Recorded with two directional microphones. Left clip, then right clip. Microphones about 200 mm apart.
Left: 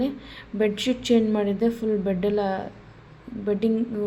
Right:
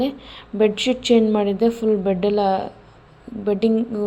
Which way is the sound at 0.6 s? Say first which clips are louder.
Right 6 dB; 15° right (ahead or behind).